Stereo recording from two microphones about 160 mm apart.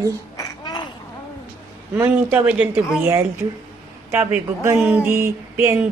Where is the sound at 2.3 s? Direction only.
10° right (ahead or behind).